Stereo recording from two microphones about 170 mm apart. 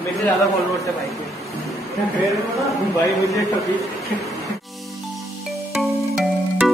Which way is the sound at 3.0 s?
20° left (ahead or behind).